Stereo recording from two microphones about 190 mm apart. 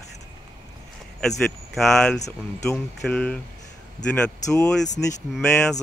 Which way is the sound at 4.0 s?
40° left (ahead or behind).